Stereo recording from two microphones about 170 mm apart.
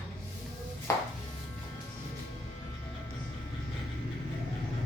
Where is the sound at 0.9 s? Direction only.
20° left (ahead or behind).